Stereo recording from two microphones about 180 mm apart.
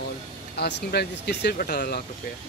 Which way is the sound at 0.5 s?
65° left (ahead or behind).